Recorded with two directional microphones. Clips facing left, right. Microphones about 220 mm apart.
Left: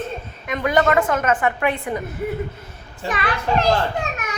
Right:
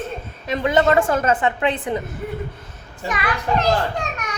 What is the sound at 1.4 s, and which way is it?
Speech, 20° right (ahead or behind).